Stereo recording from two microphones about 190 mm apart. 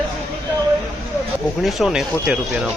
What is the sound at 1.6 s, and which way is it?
Speech, centre (ahead or behind).